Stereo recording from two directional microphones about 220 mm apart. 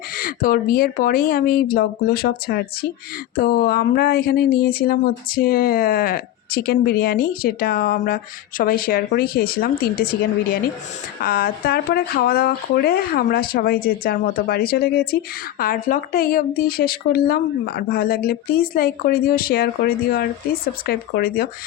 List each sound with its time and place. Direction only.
0.2 s speech: 40° left (ahead or behind)